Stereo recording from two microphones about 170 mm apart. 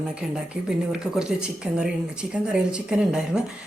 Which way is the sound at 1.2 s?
5° right (ahead or behind).